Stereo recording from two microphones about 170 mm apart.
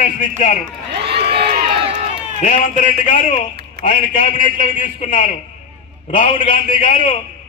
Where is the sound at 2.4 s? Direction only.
50° left (ahead or behind).